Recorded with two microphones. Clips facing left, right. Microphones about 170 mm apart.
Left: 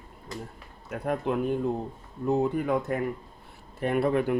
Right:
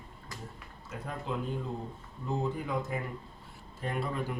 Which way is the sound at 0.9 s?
60° left (ahead or behind).